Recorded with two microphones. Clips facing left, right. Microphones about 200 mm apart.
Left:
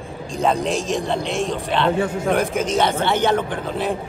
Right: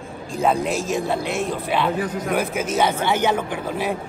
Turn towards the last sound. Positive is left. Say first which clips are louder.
# left 1 dB
turn(degrees=-10)  # may be behind; listen again after turning